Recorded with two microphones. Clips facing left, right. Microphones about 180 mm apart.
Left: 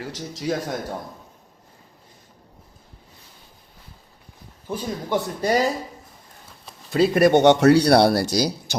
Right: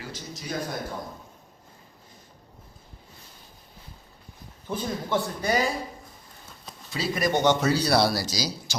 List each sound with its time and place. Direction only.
0.0 s speech: 90° left
4.7 s a man's voice: 15° left (ahead or behind)
5.4 s speech: 35° left (ahead or behind)
6.9 s speech: 55° left (ahead or behind)